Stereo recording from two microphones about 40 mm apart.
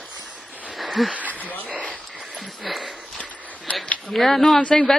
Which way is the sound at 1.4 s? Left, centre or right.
Left.